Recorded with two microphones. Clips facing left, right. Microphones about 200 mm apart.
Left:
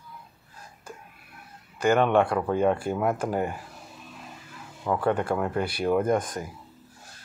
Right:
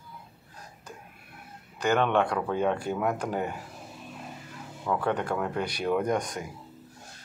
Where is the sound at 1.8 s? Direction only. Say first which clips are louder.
Left 3 dB; 10° left (ahead or behind).